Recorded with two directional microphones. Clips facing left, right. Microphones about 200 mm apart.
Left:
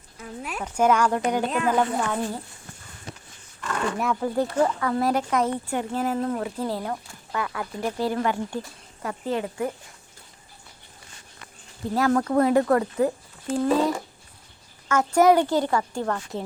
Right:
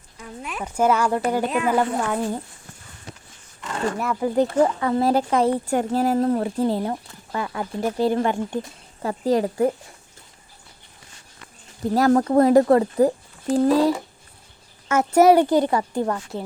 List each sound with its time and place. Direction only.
0.2 s a woman's voice: centre (ahead or behind)
3.9 s a woman's voice: centre (ahead or behind)
4.2 s speech: 20° right (ahead or behind)
6.7 s speech: 20° right (ahead or behind)
11.9 s speech: 35° right (ahead or behind)
14.8 s speech: 20° right (ahead or behind)